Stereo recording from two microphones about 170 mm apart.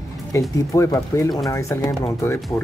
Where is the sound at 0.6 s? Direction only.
20° left (ahead or behind).